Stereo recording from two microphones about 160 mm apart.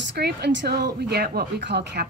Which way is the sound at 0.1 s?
90° right.